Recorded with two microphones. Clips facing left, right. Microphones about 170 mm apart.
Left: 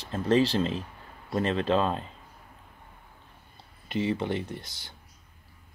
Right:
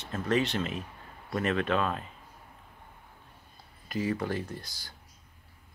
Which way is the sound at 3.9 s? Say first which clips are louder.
Left 2 dB; 25° left (ahead or behind).